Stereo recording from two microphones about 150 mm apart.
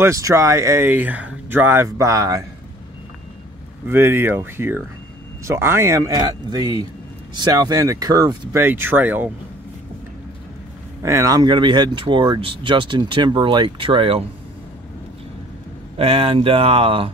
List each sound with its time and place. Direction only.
0.0 s speech: 20° right (ahead or behind)
3.8 s speech: 15° right (ahead or behind)
8.6 s speech: 15° right (ahead or behind)
11.0 s speech: 20° right (ahead or behind); by 14.2 s 35° right (ahead or behind)
16.0 s speech: 40° right (ahead or behind)